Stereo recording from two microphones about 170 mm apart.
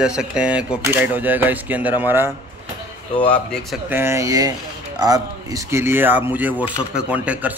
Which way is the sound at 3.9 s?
15° right (ahead or behind).